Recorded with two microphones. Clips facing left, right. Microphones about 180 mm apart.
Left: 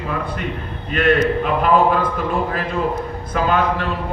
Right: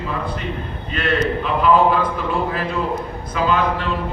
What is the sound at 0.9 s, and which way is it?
A man's voice, 50° left (ahead or behind).